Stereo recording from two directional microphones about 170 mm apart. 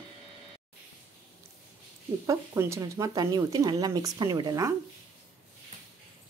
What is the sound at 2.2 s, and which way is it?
Speech, 15° right (ahead or behind).